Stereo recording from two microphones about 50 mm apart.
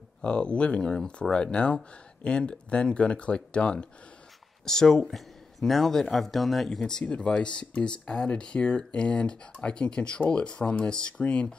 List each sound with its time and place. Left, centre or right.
0.2 s speech: left
4.6 s speech: centre
6.8 s speech: centre